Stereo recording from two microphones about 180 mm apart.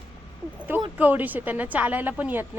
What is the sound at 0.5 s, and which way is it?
Speech, 10° right (ahead or behind).